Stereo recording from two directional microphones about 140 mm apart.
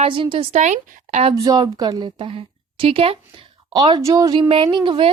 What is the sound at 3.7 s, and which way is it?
Speech, 30° right (ahead or behind).